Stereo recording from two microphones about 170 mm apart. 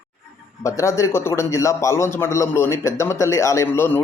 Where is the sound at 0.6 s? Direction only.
15° left (ahead or behind).